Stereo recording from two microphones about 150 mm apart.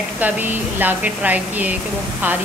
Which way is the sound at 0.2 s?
10° right (ahead or behind).